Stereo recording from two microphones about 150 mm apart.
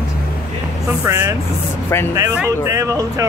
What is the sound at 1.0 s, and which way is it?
Speech, 20° right (ahead or behind).